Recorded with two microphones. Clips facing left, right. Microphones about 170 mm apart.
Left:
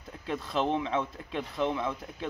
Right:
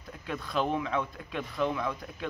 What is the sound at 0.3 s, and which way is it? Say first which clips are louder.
Speech: left 1 dB; 25° left (ahead or behind).